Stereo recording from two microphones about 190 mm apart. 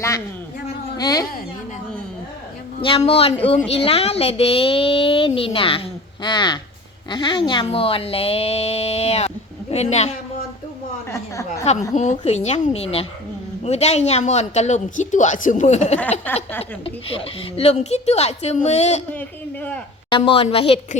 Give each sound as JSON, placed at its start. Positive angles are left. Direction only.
{"t": 0.9, "sound": "speech", "side_deg": 20}
{"t": 2.8, "sound": "speech", "side_deg": 30}
{"t": 11.1, "sound": "a sound", "side_deg": 15}
{"t": 11.9, "sound": "speech", "side_deg": 35}
{"t": 16.2, "sound": "a sound", "side_deg": 10}
{"t": 16.8, "sound": "speech", "side_deg": 30}
{"t": 20.1, "sound": "speech", "side_deg": 25}